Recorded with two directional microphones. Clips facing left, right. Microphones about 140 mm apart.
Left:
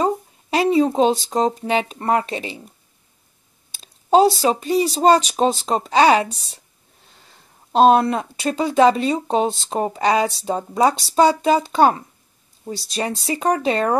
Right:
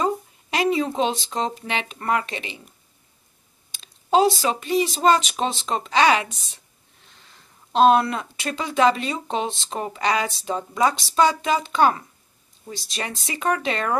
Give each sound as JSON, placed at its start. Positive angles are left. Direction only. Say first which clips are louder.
{"t": 0.0, "sound": "speech", "louder": "left 3 dB", "side_deg": 35}
{"t": 3.8, "sound": "speech", "louder": "left 4 dB", "side_deg": 35}
{"t": 7.7, "sound": "speech", "louder": "left 3 dB", "side_deg": 35}